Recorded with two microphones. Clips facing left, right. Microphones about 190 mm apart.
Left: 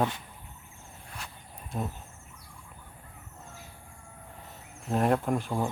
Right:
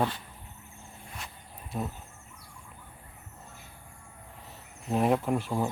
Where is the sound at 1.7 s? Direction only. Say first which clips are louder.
Even; 5° right (ahead or behind).